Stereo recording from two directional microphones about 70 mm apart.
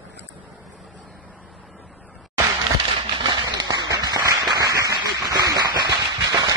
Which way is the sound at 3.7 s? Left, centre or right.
Right.